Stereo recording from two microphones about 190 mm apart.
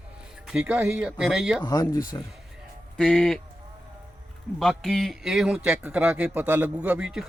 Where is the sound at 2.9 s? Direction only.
5° left (ahead or behind).